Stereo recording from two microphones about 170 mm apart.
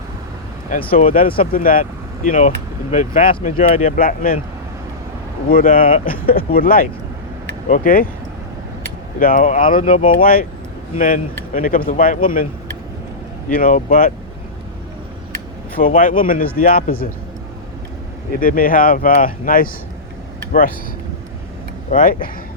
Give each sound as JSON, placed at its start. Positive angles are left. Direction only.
{"t": 0.7, "sound": "speech", "side_deg": 55}
{"t": 5.5, "sound": "speech", "side_deg": 55}
{"t": 9.1, "sound": "speech", "side_deg": 55}
{"t": 13.5, "sound": "speech", "side_deg": 55}
{"t": 16.0, "sound": "speech", "side_deg": 55}
{"t": 18.3, "sound": "speech", "side_deg": 55}
{"t": 21.8, "sound": "speech", "side_deg": 50}